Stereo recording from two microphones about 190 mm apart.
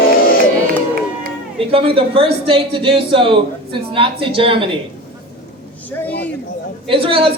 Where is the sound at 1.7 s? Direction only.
30° right (ahead or behind).